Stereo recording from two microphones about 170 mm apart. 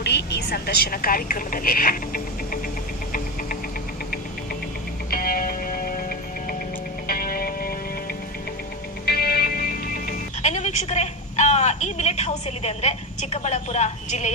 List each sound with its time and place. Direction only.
0.0 s a woman's voice: 80° left; by 2.6 s 55° left (ahead or behind)
5.1 s music: 60° left (ahead or behind)
9.0 s music: 65° left (ahead or behind); by 14.3 s 45° left (ahead or behind)